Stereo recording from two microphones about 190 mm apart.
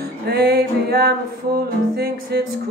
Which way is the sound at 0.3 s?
55° right (ahead or behind).